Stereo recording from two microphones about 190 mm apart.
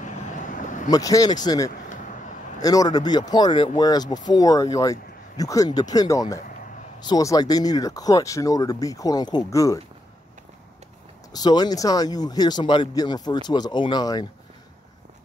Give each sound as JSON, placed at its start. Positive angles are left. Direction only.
{"t": 0.0, "sound": "a sound", "side_deg": 40}
{"t": 0.8, "sound": "speech", "side_deg": 20}
{"t": 1.7, "sound": "vehicle", "side_deg": 40}
{"t": 2.6, "sound": "speech", "side_deg": 20}
{"t": 11.3, "sound": "speech", "side_deg": 20}